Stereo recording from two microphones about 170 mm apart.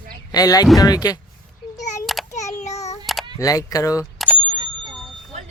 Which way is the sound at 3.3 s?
20° left (ahead or behind).